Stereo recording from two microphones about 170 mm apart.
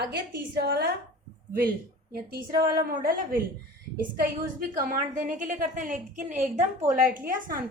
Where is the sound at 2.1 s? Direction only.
60° right (ahead or behind).